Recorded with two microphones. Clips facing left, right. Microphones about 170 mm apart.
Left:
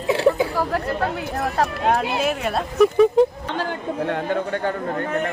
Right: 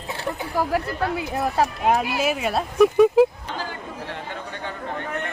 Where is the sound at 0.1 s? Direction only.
90° left.